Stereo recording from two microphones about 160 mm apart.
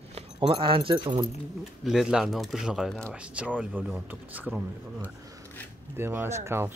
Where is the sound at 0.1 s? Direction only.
40° right (ahead or behind).